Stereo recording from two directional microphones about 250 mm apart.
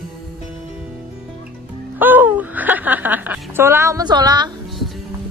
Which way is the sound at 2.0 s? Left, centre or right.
Centre.